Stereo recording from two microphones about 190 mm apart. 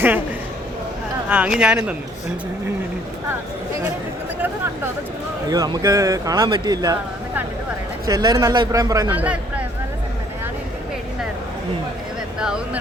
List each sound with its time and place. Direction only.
1.3 s speech: 5° right (ahead or behind)
5.5 s speech: 20° right (ahead or behind)
12.4 s speech: 5° right (ahead or behind)